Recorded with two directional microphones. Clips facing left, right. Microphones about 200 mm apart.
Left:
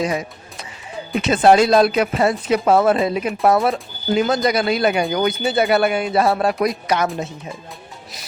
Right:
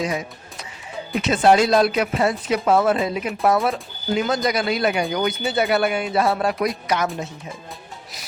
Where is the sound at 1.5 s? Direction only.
30° left (ahead or behind).